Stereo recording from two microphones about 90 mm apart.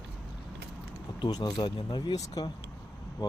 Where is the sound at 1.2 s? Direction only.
50° left (ahead or behind).